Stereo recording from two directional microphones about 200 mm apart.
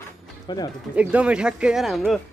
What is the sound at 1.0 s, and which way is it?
Speech, 5° right (ahead or behind).